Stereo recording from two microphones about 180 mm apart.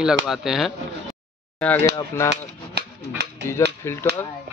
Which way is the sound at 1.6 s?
10° left (ahead or behind).